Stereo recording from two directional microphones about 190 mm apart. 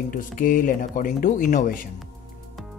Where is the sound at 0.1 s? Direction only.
45° left (ahead or behind).